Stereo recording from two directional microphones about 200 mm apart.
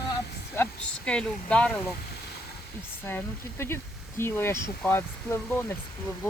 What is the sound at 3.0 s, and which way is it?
Speech, 10° left (ahead or behind).